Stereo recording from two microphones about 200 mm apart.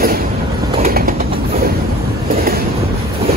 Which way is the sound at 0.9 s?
45° right (ahead or behind).